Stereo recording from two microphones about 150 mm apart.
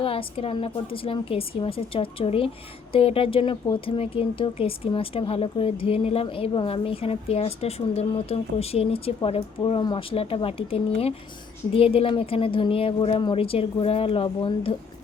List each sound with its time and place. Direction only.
0.0 s speech: 40° left (ahead or behind)